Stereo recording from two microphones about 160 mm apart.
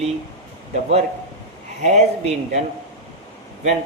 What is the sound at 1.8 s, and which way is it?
Speech, 45° right (ahead or behind).